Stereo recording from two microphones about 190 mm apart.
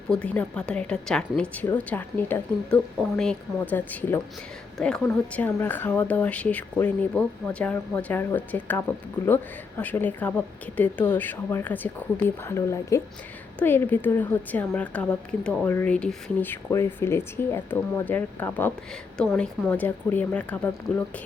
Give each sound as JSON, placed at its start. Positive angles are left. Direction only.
{"t": 0.1, "sound": "a woman's voice", "side_deg": 5}